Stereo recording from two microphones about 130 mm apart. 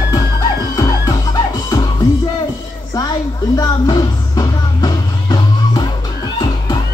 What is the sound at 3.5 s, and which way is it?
Music, 30° left (ahead or behind).